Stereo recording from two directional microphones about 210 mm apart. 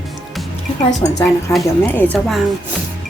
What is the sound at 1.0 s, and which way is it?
A woman's voice, 15° left (ahead or behind).